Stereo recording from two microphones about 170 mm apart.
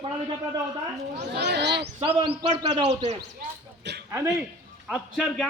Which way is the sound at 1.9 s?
35° right (ahead or behind).